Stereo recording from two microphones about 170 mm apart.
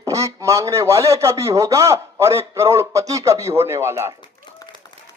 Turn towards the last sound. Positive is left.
turn(degrees=25)  # may be behind; listen again after turning